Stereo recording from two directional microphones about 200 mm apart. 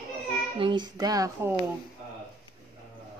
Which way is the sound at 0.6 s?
20° right (ahead or behind).